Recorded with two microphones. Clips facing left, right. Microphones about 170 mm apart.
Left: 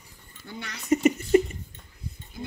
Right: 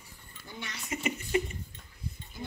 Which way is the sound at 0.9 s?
40° left (ahead or behind).